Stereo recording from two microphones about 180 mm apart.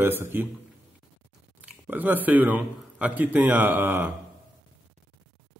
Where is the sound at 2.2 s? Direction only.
10° right (ahead or behind).